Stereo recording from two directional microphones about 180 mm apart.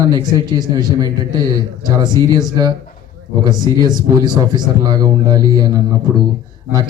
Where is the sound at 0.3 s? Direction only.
20° right (ahead or behind).